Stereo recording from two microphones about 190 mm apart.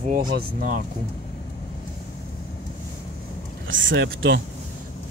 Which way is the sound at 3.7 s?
80° right.